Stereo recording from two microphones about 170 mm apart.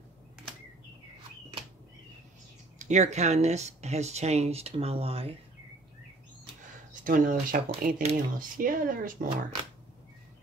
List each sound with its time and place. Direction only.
2.8 s speech: 45° right (ahead or behind)
6.9 s speech: 50° right (ahead or behind)